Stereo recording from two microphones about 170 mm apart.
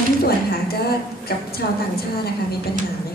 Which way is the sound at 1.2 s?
65° left (ahead or behind).